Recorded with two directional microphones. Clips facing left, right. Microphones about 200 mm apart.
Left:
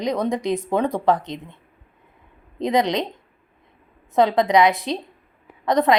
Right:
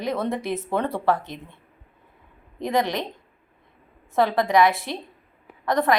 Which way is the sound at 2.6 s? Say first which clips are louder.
Left 4 dB; 20° left (ahead or behind).